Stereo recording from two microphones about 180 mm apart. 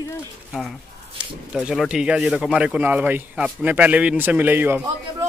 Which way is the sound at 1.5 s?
5° right (ahead or behind).